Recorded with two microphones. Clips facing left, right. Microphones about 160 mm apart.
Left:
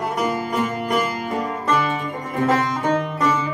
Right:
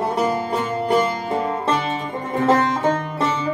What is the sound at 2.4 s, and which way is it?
Music, 30° right (ahead or behind).